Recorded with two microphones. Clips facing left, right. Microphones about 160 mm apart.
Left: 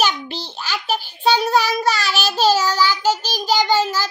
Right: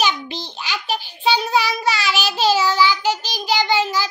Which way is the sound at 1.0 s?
15° right (ahead or behind).